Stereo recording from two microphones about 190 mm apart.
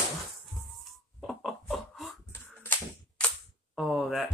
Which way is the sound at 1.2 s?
Centre (ahead or behind).